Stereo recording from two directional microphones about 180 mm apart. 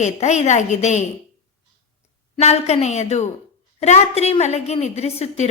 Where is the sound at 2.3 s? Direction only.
35° left (ahead or behind).